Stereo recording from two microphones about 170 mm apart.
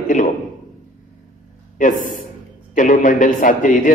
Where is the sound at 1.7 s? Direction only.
50° left (ahead or behind).